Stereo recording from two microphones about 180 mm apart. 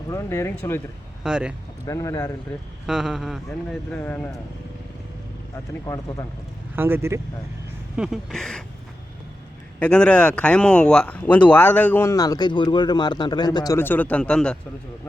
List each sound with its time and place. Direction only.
0.1 s speech: 15° left (ahead or behind)
1.2 s speech: 5° right (ahead or behind)
1.9 s speech: 20° left (ahead or behind)
2.8 s speech: 5° right (ahead or behind)
5.8 s speech: 20° left (ahead or behind)
6.7 s speech: 10° right (ahead or behind)
7.9 s speech: 5° right (ahead or behind)
9.8 s speech: 5° left (ahead or behind); by 13.7 s 25° left (ahead or behind)
13.7 s speech: 10° left (ahead or behind)